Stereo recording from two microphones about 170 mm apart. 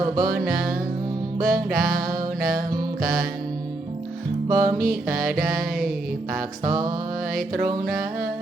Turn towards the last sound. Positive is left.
turn(degrees=-20)  # may be behind; listen again after turning